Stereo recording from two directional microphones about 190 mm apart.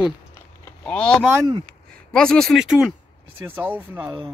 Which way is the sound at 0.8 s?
5° left (ahead or behind).